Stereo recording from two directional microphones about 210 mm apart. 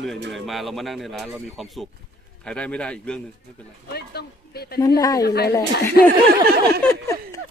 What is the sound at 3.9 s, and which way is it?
Speech, 50° left (ahead or behind).